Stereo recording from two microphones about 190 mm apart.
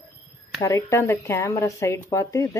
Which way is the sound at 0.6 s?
15° left (ahead or behind).